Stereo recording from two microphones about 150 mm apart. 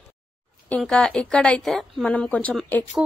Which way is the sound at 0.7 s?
5° left (ahead or behind).